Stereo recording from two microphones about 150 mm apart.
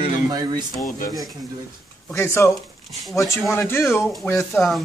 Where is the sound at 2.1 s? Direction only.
15° left (ahead or behind).